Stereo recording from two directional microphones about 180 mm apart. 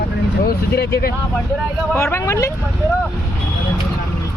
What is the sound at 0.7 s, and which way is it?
Speech, 60° left (ahead or behind).